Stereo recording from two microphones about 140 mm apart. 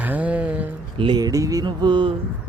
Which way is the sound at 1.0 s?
30° right (ahead or behind).